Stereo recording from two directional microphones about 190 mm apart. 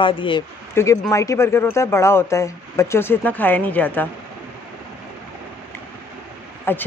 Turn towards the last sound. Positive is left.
turn(degrees=10)  # may be behind; listen again after turning